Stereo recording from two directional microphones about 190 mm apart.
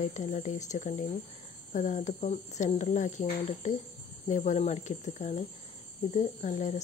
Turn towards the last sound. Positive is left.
turn(degrees=35)  # may be behind; listen again after turning